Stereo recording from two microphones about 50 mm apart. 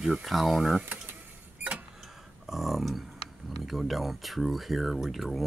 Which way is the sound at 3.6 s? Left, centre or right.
Centre.